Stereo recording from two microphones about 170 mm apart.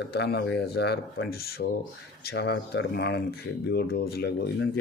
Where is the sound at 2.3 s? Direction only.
75° left (ahead or behind).